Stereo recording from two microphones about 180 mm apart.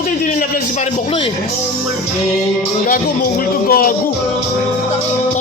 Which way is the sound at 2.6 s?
50° left (ahead or behind).